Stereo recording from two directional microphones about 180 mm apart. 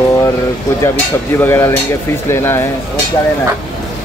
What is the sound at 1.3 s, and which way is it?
Speech, 15° left (ahead or behind).